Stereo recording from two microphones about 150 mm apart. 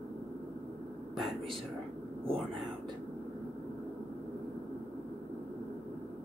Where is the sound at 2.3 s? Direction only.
Centre (ahead or behind).